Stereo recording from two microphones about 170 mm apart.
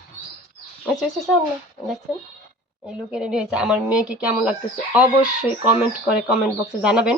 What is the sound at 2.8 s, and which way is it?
Speech, 5° right (ahead or behind).